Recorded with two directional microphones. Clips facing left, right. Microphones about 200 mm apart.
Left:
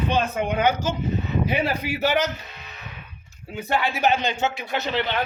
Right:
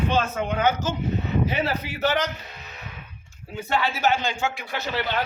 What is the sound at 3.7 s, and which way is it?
Speech, 15° left (ahead or behind).